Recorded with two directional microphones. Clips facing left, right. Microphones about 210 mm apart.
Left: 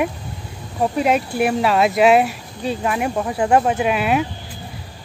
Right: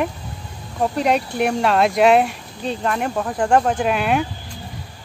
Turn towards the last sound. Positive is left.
turn(degrees=5)  # may be behind; listen again after turning